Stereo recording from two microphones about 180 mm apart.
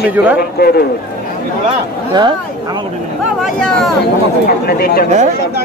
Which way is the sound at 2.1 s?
25° right (ahead or behind).